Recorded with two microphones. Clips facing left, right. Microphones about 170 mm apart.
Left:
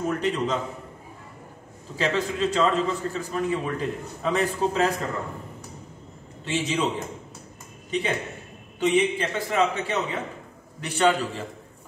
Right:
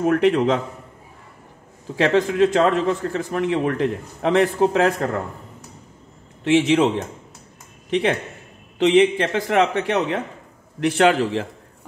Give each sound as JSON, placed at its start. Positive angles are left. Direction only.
{"t": 0.0, "sound": "a man's voice", "side_deg": -70}
{"t": 2.1, "sound": "a man's voice", "side_deg": -90}
{"t": 6.4, "sound": "a man's voice", "side_deg": -70}
{"t": 7.9, "sound": "a man's voice", "side_deg": -65}
{"t": 8.7, "sound": "a man's voice", "side_deg": -85}
{"t": 10.8, "sound": "a man's voice", "side_deg": -90}